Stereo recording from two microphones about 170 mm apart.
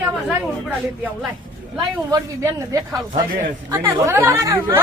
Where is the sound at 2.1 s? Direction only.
20° right (ahead or behind).